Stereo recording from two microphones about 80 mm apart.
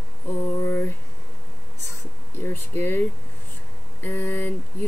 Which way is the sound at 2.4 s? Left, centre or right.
Left.